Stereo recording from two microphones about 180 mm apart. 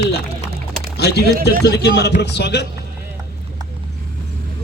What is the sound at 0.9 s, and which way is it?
A man's voice, 65° left (ahead or behind).